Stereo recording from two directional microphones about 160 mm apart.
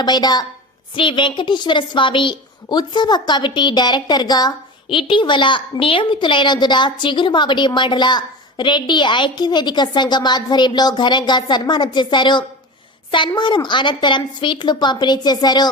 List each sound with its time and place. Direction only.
0.0 s a woman's voice: 25° left (ahead or behind)